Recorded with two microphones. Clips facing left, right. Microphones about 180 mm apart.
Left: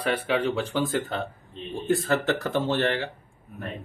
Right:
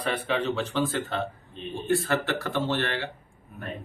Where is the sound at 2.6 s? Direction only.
15° left (ahead or behind).